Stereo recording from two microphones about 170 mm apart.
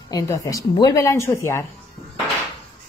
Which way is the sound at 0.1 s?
20° left (ahead or behind).